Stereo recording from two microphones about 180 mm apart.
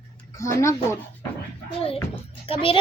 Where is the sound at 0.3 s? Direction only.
15° left (ahead or behind).